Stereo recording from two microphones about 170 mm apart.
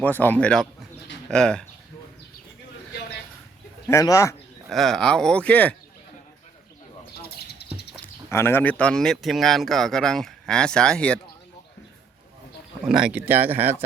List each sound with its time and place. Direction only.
0.0 s speech: 10° left (ahead or behind)
3.8 s speech: 20° left (ahead or behind)
4.7 s speech: centre (ahead or behind)
7.2 s bird: 70° left (ahead or behind)
8.0 s speech: 15° left (ahead or behind)
12.9 s speech: 5° right (ahead or behind)